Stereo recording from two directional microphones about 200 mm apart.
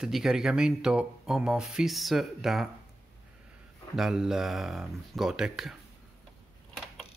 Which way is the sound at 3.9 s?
Centre (ahead or behind).